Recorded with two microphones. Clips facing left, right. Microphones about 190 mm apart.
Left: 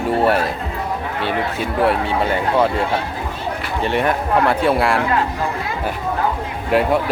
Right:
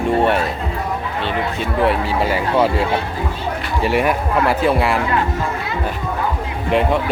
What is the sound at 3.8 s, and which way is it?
Speech, 5° right (ahead or behind).